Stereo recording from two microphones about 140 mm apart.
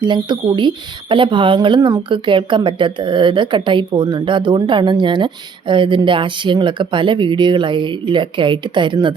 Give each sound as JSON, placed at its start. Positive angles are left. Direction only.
{"t": 0.0, "sound": "speech", "side_deg": -35}